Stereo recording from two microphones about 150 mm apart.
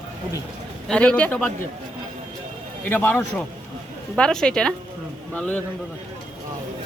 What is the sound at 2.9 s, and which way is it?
Speech, 10° left (ahead or behind).